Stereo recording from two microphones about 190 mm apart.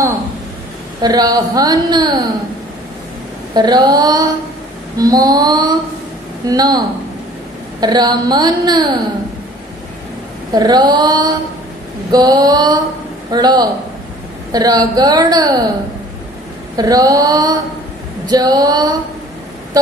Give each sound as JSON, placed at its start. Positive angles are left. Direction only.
{"t": 1.0, "sound": "a woman's voice", "side_deg": -20}
{"t": 3.5, "sound": "a woman's voice", "side_deg": -20}
{"t": 7.8, "sound": "a woman's voice", "side_deg": -20}
{"t": 10.5, "sound": "a woman's voice", "side_deg": -20}
{"t": 16.7, "sound": "a woman's voice", "side_deg": -20}